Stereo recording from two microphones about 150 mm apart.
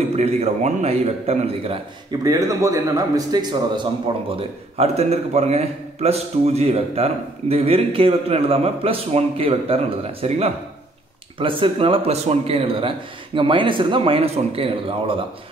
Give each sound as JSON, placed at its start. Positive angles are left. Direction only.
{"t": 0.1, "sound": "a man's voice", "side_deg": -45}
{"t": 2.2, "sound": "a man's voice", "side_deg": -20}
{"t": 4.4, "sound": "a man's voice", "side_deg": -45}